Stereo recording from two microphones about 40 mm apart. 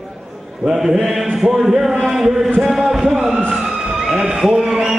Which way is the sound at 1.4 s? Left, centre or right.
Centre.